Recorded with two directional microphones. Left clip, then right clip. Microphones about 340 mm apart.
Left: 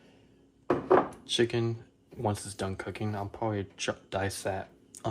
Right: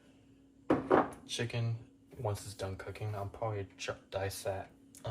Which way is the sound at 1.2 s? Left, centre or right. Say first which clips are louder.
Left 11 dB; left.